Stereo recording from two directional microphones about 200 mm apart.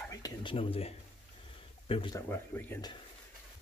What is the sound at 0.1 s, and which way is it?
Speech, 20° left (ahead or behind).